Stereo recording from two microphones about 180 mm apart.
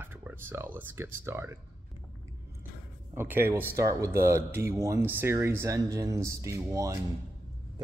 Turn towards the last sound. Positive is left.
turn(degrees=-15)  # may be behind; listen again after turning